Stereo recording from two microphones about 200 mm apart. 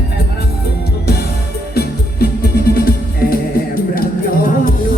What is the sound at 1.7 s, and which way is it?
Music, 50° left (ahead or behind).